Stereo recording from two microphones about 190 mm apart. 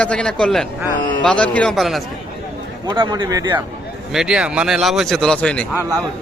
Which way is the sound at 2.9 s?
25° right (ahead or behind).